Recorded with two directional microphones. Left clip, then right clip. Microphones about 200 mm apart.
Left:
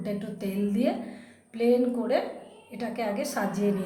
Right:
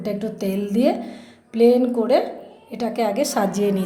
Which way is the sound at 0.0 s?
30° right (ahead or behind).